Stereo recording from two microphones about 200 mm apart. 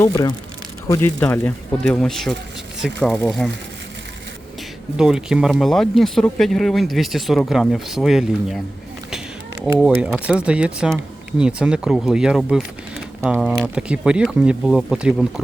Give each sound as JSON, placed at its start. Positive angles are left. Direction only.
{"t": 0.0, "sound": "speech", "side_deg": 15}
{"t": 4.9, "sound": "speech", "side_deg": -5}